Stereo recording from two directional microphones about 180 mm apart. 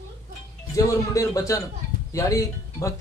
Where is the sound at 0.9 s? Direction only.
20° left (ahead or behind).